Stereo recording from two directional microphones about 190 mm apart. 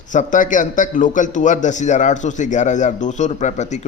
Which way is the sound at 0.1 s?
40° left (ahead or behind).